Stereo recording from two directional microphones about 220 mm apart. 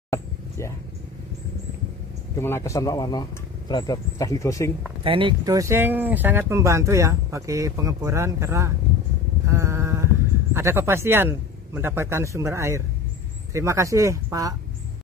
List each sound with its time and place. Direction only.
0.1 s a sound: 15° left (ahead or behind)
2.3 s speech: 10° left (ahead or behind)
5.0 s speech: 25° right (ahead or behind)
9.5 s sheep: 15° right (ahead or behind)
10.5 s speech: 10° right (ahead or behind)